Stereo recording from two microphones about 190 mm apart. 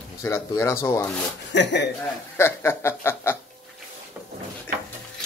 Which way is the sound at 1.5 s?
65° left (ahead or behind).